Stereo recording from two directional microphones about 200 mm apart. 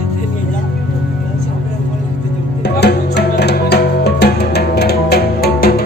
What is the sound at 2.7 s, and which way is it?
Music, 55° left (ahead or behind).